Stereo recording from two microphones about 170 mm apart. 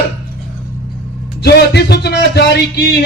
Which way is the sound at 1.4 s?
75° left (ahead or behind).